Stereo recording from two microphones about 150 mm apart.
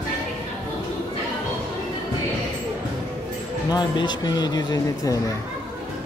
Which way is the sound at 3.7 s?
30° left (ahead or behind).